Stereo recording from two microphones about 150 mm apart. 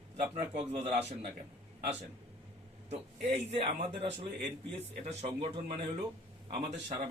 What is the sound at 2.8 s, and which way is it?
Speech, 45° right (ahead or behind).